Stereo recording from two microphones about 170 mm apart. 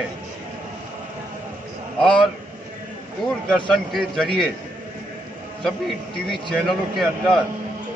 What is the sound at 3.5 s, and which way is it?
A man's voice, centre (ahead or behind).